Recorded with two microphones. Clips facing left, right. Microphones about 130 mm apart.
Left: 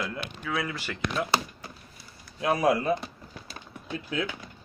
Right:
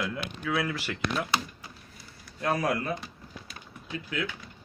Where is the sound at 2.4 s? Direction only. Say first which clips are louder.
Left 4 dB; 15° left (ahead or behind).